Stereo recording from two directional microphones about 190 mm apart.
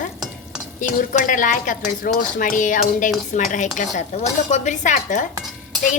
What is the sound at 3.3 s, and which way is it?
Dishes, 40° left (ahead or behind).